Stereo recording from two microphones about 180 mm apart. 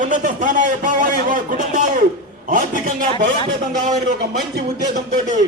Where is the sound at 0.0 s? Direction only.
45° right (ahead or behind).